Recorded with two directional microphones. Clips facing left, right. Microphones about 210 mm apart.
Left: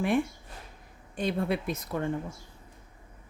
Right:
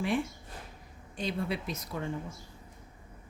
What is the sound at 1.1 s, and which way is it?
Speech, 55° left (ahead or behind).